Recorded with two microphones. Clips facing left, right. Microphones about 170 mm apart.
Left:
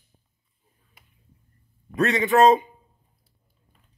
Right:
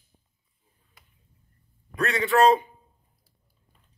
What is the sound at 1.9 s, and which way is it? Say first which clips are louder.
Speech: left 3 dB; 20° left (ahead or behind).